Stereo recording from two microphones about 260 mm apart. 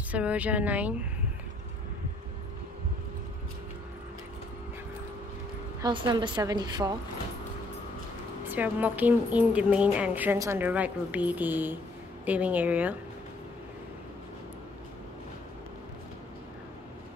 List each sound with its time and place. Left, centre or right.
0.1 s speech: centre
5.8 s a woman's voice: centre
8.5 s a woman's voice: centre